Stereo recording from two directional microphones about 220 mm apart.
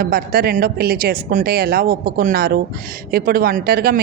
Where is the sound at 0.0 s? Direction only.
45° right (ahead or behind).